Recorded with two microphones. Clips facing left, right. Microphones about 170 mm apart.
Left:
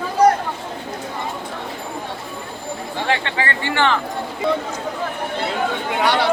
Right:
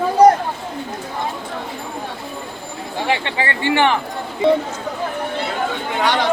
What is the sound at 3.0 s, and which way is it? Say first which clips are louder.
Speech: right 1 dB; 15° right (ahead or behind).